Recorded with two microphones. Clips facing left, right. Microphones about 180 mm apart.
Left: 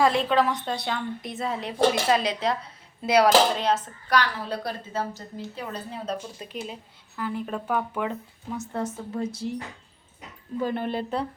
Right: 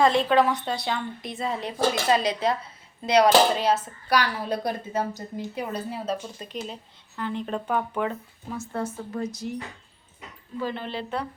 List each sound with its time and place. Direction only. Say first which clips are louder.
0.0 s a woman's voice: right 2 dB; centre (ahead or behind)
6.4 s speech: right 1 dB; 5° left (ahead or behind)
8.5 s a woman's voice: even; 20° left (ahead or behind)
10.6 s speech: left 3 dB; 50° left (ahead or behind)